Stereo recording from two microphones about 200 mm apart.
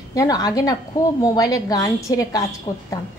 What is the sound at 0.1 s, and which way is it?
A woman's voice, 20° left (ahead or behind).